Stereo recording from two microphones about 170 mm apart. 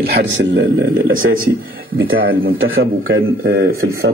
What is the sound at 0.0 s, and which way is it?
Speech, 80° right.